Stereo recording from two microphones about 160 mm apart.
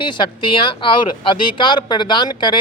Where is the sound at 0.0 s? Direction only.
30° left (ahead or behind).